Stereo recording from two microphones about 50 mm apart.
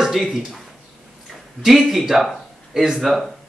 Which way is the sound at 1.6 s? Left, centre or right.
Centre.